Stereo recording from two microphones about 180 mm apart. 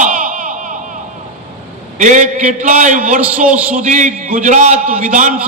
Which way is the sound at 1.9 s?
45° right (ahead or behind).